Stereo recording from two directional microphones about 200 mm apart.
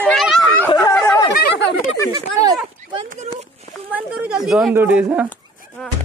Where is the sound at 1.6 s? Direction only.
60° left (ahead or behind).